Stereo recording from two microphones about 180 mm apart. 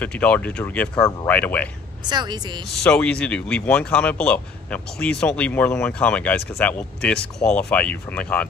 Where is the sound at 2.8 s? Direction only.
5° left (ahead or behind).